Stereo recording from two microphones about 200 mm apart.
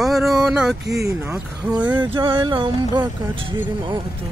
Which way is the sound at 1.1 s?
15° right (ahead or behind).